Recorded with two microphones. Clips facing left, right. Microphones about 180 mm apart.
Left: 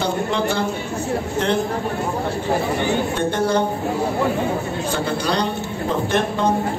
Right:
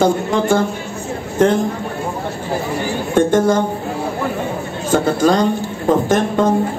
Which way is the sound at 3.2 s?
45° right (ahead or behind).